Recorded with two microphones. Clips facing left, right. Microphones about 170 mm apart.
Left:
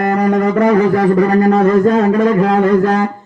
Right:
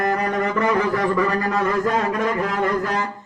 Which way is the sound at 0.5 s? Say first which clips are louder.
Left 8 dB; 45° left (ahead or behind).